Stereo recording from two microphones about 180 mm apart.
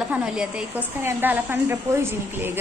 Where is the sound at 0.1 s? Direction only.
5° right (ahead or behind).